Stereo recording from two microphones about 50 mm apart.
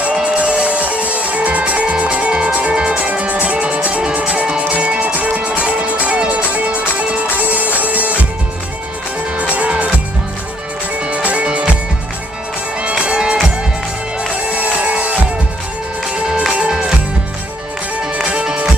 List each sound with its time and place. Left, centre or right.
0.0 s music: right
9.4 s music: right
11.0 s music: right
13.0 s music: centre
14.5 s music: right
16.5 s music: centre
18.1 s music: centre